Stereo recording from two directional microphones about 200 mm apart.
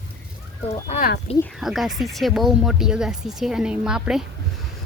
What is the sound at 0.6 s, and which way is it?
Speech, 30° left (ahead or behind).